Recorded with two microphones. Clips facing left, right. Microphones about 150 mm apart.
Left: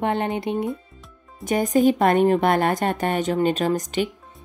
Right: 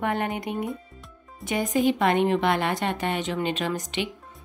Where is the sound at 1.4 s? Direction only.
40° left (ahead or behind).